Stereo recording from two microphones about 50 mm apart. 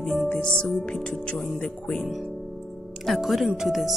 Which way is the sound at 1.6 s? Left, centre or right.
Left.